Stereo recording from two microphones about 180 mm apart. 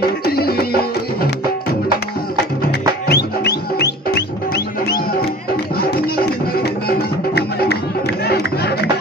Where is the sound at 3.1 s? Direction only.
65° left (ahead or behind).